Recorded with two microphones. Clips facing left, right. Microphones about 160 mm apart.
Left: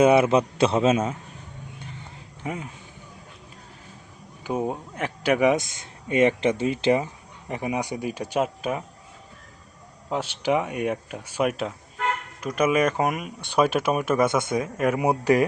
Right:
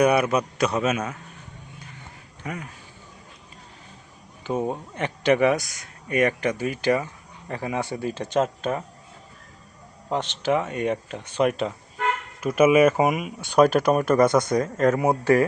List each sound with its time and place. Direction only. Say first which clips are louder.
0.0 s speech: left 3 dB; 25° left (ahead or behind)
2.4 s speech: left 2 dB; 20° left (ahead or behind)
4.4 s speech: right 1 dB; 10° left (ahead or behind)
5.5 s speech: left 3 dB; 25° left (ahead or behind)
10.1 s speech: right 1 dB; 5° left (ahead or behind)
12.4 s speech: right 5 dB; 5° right (ahead or behind); by 15.4 s 15° left (ahead or behind)